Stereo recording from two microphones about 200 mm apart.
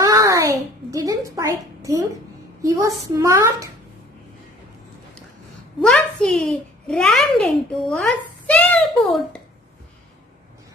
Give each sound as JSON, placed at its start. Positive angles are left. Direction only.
{"t": 0.0, "sound": "a sound", "side_deg": -15}
{"t": 2.6, "sound": "a woman's voice", "side_deg": -15}
{"t": 5.8, "sound": "a child's voice", "side_deg": 5}